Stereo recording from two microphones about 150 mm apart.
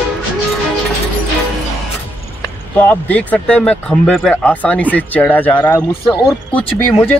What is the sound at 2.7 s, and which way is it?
Speech, 10° left (ahead or behind).